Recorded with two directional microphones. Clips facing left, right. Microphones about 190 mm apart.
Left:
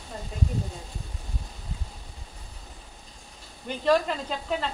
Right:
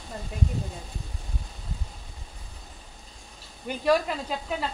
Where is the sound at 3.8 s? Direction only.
10° right (ahead or behind).